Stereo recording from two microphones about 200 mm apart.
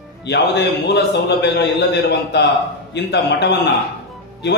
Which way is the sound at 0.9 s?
60° left (ahead or behind).